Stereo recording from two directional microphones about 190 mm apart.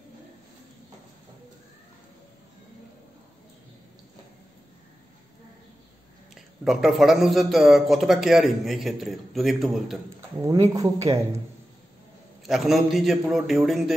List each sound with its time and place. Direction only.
6.3 s a man's voice: centre (ahead or behind)
10.7 s speech: 15° right (ahead or behind)
12.4 s a man's voice: centre (ahead or behind)